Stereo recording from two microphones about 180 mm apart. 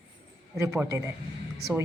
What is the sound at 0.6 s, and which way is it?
Speech, 15° right (ahead or behind).